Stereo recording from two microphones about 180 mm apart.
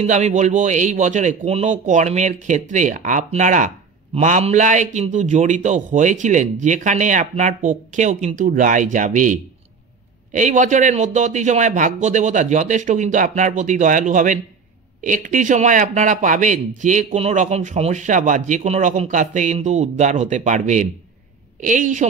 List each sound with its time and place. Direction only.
0.0 s a man's voice: 40° right (ahead or behind)